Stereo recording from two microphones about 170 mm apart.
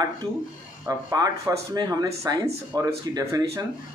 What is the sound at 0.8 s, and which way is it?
Speech, 20° right (ahead or behind).